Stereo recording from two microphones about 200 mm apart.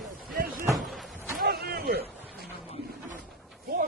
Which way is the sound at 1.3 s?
50° right (ahead or behind).